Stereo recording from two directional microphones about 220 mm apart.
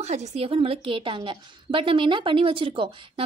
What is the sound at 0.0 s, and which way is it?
A woman's voice, 30° right (ahead or behind).